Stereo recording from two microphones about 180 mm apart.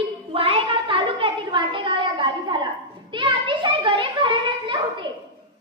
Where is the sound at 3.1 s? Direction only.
25° right (ahead or behind).